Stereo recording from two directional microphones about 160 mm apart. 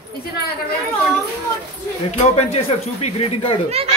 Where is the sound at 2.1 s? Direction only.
40° left (ahead or behind).